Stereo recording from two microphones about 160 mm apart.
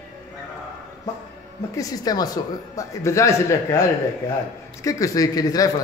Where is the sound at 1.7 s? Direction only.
20° left (ahead or behind).